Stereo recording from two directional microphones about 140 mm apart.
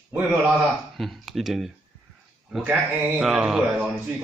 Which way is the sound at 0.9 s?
Centre (ahead or behind).